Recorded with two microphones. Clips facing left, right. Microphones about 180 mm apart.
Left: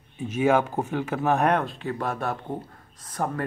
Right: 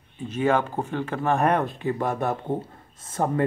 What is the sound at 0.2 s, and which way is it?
Speech, 10° left (ahead or behind).